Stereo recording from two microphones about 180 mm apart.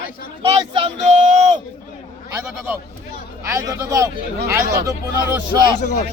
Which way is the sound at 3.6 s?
20° right (ahead or behind).